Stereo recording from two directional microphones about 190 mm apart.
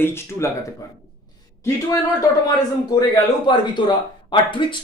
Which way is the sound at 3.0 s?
25° left (ahead or behind).